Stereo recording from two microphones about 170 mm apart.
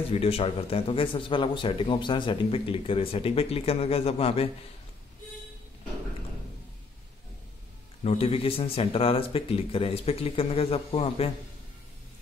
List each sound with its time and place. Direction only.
0.1 s speech: 35° left (ahead or behind)
8.0 s speech: 35° left (ahead or behind)